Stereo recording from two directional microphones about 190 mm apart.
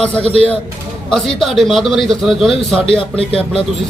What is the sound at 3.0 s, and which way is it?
Speech, 30° left (ahead or behind).